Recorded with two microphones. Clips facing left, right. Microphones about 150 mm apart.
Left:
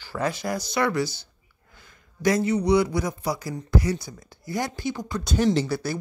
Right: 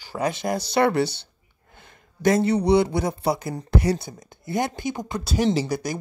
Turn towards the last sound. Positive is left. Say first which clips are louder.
# even
turn(degrees=-15)  # may be behind; listen again after turning